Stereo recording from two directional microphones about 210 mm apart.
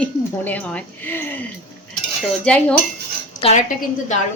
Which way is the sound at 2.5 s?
5° left (ahead or behind).